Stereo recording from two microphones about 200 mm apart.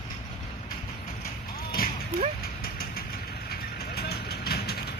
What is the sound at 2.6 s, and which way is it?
Vehicle, 50° left (ahead or behind).